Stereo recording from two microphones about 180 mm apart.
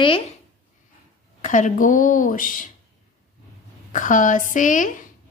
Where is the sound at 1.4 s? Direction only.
45° left (ahead or behind).